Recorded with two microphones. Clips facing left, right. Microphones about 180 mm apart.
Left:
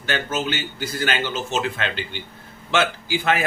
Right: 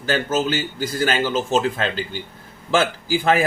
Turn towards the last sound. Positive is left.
turn(degrees=-40)  # may be behind; listen again after turning